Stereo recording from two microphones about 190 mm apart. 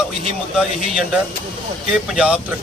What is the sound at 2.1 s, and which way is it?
Speech, 5° right (ahead or behind).